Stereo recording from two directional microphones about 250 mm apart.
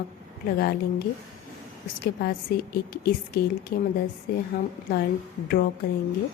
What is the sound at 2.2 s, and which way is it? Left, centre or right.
A woman's voice, left.